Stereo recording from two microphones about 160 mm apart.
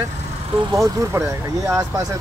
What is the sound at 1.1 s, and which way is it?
Speech, 15° right (ahead or behind).